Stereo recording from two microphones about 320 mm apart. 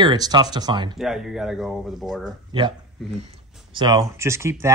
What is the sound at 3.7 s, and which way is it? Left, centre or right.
Speech, centre.